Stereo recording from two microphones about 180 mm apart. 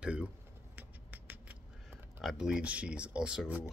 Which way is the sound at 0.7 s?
10° right (ahead or behind).